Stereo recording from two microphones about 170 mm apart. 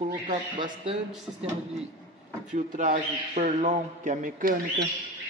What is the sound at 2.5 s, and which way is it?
A man's voice, 45° right (ahead or behind).